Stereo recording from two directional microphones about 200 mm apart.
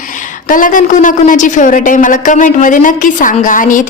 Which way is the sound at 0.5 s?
40° left (ahead or behind).